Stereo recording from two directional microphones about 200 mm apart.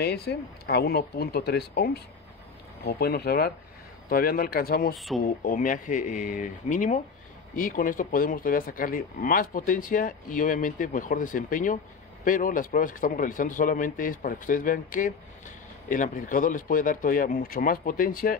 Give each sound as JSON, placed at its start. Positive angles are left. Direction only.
{"t": 0.0, "sound": "speech", "side_deg": 55}
{"t": 4.9, "sound": "speech", "side_deg": 0}
{"t": 5.2, "sound": "speech", "side_deg": 45}